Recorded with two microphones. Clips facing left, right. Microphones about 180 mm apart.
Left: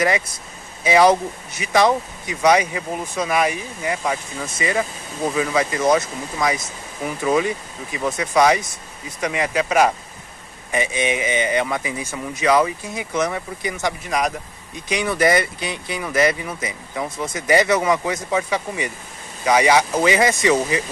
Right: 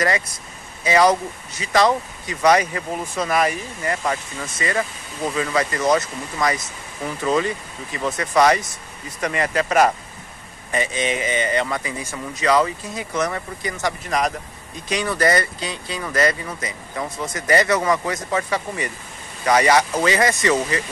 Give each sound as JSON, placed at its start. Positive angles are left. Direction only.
{"t": 0.8, "sound": "speech", "side_deg": 15}